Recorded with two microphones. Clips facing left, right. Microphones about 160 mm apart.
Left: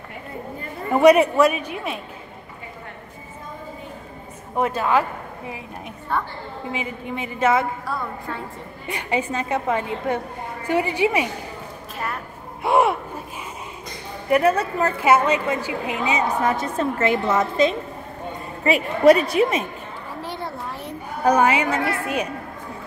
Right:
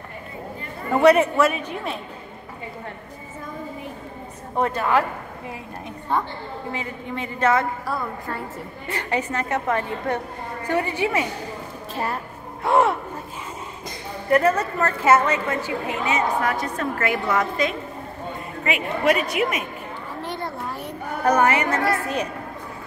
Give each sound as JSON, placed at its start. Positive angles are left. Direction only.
{"t": 0.9, "sound": "a woman's voice", "side_deg": 15}
{"t": 4.6, "sound": "a woman's voice", "side_deg": 15}
{"t": 6.1, "sound": "a woman's voice", "side_deg": -15}
{"t": 6.7, "sound": "a woman's voice", "side_deg": 10}
{"t": 7.8, "sound": "a woman's voice", "side_deg": 0}
{"t": 8.8, "sound": "a woman's voice", "side_deg": 15}
{"t": 12.6, "sound": "a woman's voice", "side_deg": 10}
{"t": 14.3, "sound": "a woman's voice", "side_deg": 10}
{"t": 20.2, "sound": "a sound", "side_deg": 0}